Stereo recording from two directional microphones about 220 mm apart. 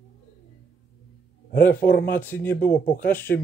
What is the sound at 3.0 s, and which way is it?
Speech, 10° left (ahead or behind).